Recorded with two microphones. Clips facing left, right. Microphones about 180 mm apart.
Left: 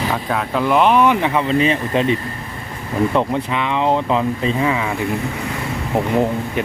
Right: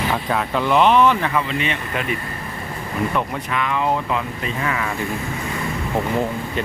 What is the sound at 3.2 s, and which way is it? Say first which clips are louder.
Speech: left 4 dB; 25° left (ahead or behind).